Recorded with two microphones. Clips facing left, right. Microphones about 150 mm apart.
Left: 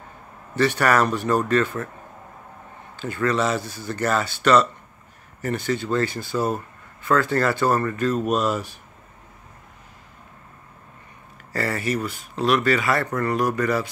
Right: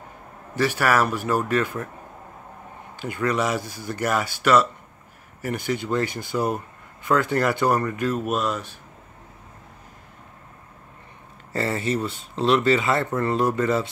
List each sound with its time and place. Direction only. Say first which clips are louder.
0.6 s speech: left 2 dB; 5° right (ahead or behind)
3.0 s speech: left 1 dB; 15° right (ahead or behind); by 8.7 s 5° left (ahead or behind)
11.5 s speech: even; 20° right (ahead or behind)